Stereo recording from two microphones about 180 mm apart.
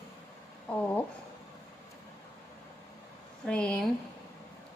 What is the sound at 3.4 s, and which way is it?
Speech, 5° left (ahead or behind).